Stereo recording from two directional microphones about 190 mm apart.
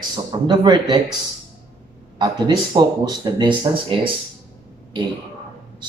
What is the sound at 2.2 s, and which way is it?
A man's voice, 20° right (ahead or behind).